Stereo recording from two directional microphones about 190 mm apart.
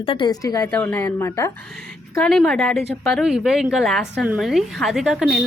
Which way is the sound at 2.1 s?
5° left (ahead or behind).